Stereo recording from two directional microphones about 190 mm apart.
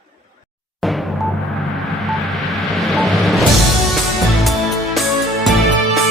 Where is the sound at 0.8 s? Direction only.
Centre (ahead or behind).